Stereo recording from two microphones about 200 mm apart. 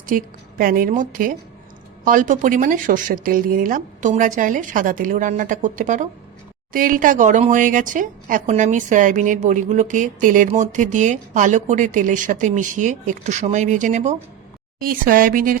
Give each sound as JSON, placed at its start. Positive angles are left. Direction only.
{"t": 0.0, "sound": "a woman's voice", "side_deg": -45}